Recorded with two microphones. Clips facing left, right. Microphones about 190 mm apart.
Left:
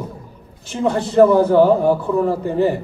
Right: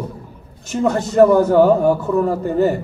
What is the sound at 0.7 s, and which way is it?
A man's voice, 45° right (ahead or behind).